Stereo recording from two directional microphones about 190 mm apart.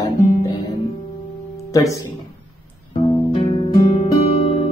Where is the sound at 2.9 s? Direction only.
35° left (ahead or behind).